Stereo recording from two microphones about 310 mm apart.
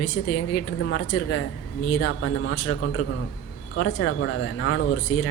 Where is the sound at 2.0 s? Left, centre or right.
Left.